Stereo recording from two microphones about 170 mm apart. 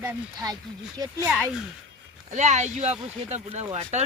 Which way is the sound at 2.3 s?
45° right (ahead or behind).